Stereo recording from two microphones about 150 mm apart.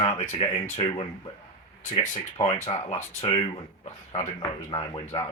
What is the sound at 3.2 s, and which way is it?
Speech, 40° left (ahead or behind).